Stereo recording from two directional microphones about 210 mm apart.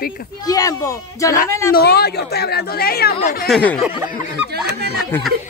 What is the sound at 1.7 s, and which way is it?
Speech, 50° left (ahead or behind).